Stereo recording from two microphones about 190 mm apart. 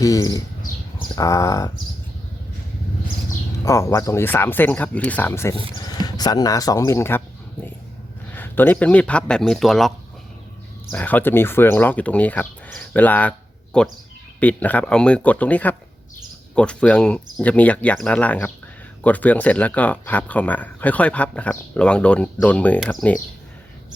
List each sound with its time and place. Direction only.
0.0 s speech: 20° left (ahead or behind)
0.9 s a sound: 20° left (ahead or behind)
3.6 s speech: 15° left (ahead or behind)
8.3 s speech: 10° left (ahead or behind)
10.9 s speech: 10° left (ahead or behind)